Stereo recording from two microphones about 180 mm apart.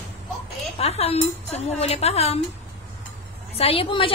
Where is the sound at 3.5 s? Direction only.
30° left (ahead or behind).